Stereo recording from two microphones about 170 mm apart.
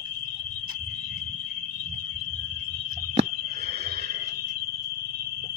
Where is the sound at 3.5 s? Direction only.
70° right (ahead or behind).